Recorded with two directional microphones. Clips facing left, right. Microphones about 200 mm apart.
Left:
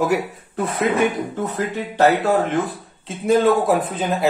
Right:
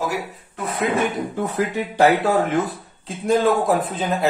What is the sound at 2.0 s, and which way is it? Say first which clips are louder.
Speech: even; 10° right (ahead or behind).